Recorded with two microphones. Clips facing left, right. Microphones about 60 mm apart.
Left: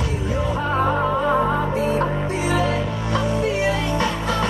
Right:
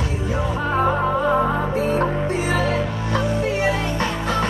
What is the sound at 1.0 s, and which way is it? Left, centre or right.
Music, right.